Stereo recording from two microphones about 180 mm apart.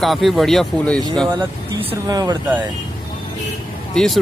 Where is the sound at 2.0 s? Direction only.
20° right (ahead or behind).